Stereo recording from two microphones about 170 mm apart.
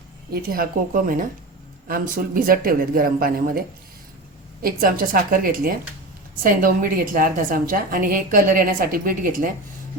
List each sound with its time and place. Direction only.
0.5 s a woman's voice: 60° right (ahead or behind)
4.6 s a woman's voice: 55° right (ahead or behind)